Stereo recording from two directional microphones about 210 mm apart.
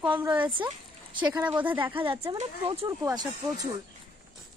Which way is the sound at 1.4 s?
5° right (ahead or behind).